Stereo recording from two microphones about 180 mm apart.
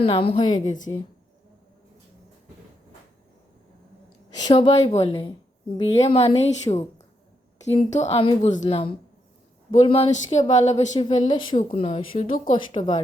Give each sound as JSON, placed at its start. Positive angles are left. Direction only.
{"t": 0.0, "sound": "speech", "side_deg": 30}
{"t": 0.6, "sound": "a woman's voice", "side_deg": 45}
{"t": 4.5, "sound": "speech", "side_deg": 35}
{"t": 10.9, "sound": "speech", "side_deg": 25}
{"t": 11.5, "sound": "speech", "side_deg": 35}